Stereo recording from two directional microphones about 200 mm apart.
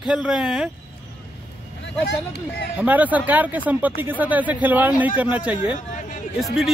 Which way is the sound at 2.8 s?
10° right (ahead or behind).